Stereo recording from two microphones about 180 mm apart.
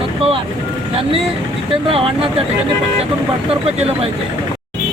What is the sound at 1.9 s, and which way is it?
Speech, 30° right (ahead or behind).